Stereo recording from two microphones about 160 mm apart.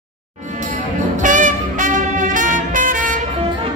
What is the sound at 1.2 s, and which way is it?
Music, 55° right (ahead or behind).